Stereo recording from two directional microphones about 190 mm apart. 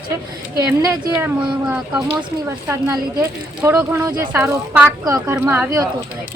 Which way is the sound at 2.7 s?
20° right (ahead or behind).